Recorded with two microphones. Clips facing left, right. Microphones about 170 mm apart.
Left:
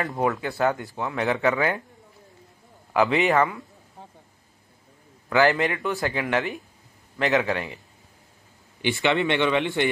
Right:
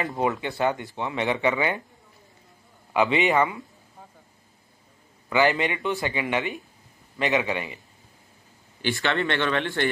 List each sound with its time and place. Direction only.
0.0 s speech: centre (ahead or behind)
2.9 s a sound: 5° right (ahead or behind)
3.3 s speech: 5° right (ahead or behind)
5.3 s a man's voice: 15° right (ahead or behind)
8.8 s speech: 15° left (ahead or behind)